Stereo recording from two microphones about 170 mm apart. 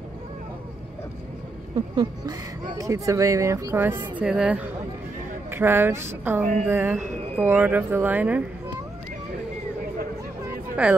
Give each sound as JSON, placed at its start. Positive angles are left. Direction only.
{"t": 2.0, "sound": "speech", "side_deg": -25}
{"t": 6.4, "sound": "a woman's voice", "side_deg": -45}
{"t": 6.7, "sound": "speech", "side_deg": -15}
{"t": 10.8, "sound": "speech", "side_deg": -10}